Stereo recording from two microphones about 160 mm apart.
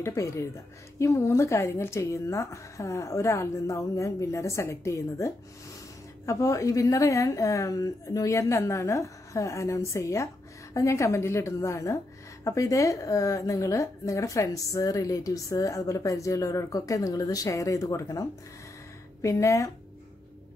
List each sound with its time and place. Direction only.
0.0 s a woman's voice: 20° left (ahead or behind)
19.2 s a woman's voice: 20° left (ahead or behind)